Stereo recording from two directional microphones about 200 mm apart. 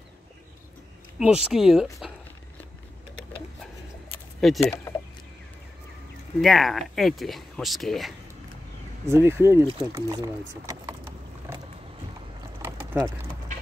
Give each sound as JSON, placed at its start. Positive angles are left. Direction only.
{"t": 1.2, "sound": "speech", "side_deg": -5}
{"t": 4.4, "sound": "speech", "side_deg": 0}
{"t": 4.9, "sound": "chicken", "side_deg": 15}
{"t": 6.4, "sound": "speech", "side_deg": 0}
{"t": 9.0, "sound": "speech", "side_deg": -10}
{"t": 9.7, "sound": "speech", "side_deg": -25}
{"t": 10.5, "sound": "a sound", "side_deg": -15}
{"t": 11.5, "sound": "vehicle", "side_deg": -10}
{"t": 12.6, "sound": "a sound", "side_deg": -15}